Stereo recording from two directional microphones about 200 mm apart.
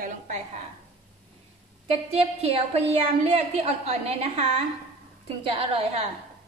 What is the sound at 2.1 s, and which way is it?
A woman's voice, 30° right (ahead or behind).